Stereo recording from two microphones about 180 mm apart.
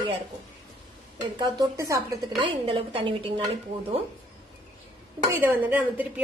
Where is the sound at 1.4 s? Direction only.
20° right (ahead or behind).